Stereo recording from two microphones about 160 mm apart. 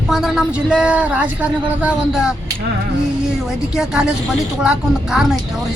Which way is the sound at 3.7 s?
5° right (ahead or behind).